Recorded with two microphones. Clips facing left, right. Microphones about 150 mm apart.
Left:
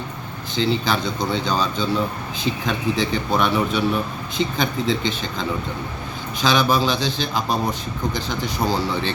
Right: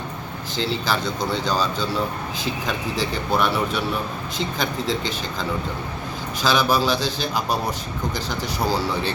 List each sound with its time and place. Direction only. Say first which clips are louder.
0.5 s speech: left 3 dB; 5° right (ahead or behind)
3.0 s speech: even; 5° right (ahead or behind)